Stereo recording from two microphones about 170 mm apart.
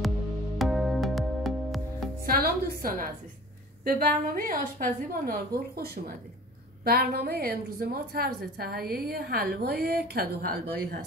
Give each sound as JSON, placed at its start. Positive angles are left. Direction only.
{"t": 0.6, "sound": "music", "side_deg": 0}
{"t": 2.2, "sound": "a sound", "side_deg": -60}
{"t": 3.8, "sound": "a woman's voice", "side_deg": -55}
{"t": 6.8, "sound": "a woman's voice", "side_deg": -65}